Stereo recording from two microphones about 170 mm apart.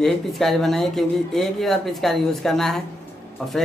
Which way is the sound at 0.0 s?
Centre (ahead or behind).